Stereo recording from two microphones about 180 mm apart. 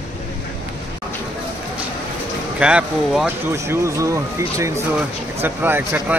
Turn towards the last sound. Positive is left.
turn(degrees=-10)  # may be behind; listen again after turning